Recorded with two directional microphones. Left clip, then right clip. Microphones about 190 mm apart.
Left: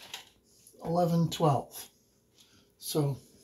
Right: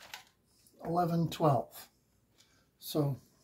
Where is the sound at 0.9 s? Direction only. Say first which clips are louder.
Left 3 dB; 15° right (ahead or behind).